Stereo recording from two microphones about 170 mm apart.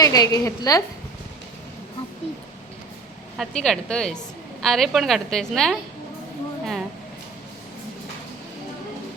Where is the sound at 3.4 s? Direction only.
Centre (ahead or behind).